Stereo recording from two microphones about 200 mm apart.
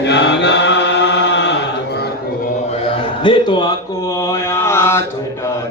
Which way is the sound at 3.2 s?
25° left (ahead or behind).